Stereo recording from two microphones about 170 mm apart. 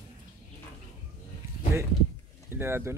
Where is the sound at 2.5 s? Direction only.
15° right (ahead or behind).